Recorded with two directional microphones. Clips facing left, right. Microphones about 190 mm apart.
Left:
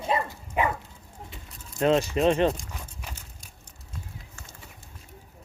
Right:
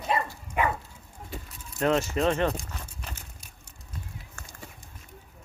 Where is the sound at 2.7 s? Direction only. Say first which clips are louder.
Even; 10° left (ahead or behind).